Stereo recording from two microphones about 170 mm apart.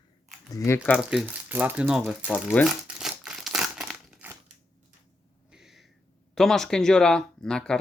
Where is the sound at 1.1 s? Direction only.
5° right (ahead or behind).